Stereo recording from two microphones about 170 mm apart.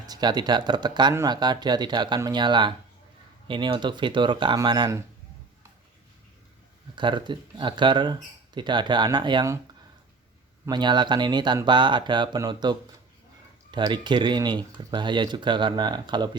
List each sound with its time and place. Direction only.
0.0 s speech: 25° right (ahead or behind)
6.9 s speech: 25° right (ahead or behind)
10.7 s speech: 25° right (ahead or behind)